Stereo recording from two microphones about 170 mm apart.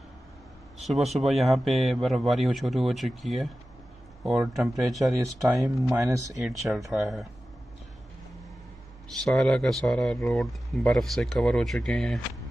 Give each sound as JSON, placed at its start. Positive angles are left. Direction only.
{"t": 0.8, "sound": "speech", "side_deg": 0}
{"t": 5.1, "sound": "speech", "side_deg": -20}
{"t": 6.9, "sound": "speech", "side_deg": 0}
{"t": 9.1, "sound": "speech", "side_deg": 0}